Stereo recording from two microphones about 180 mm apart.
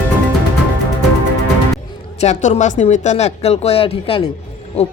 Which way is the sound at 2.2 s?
40° left (ahead or behind).